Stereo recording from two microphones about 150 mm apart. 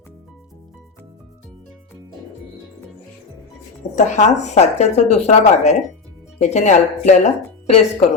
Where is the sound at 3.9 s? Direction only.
50° left (ahead or behind).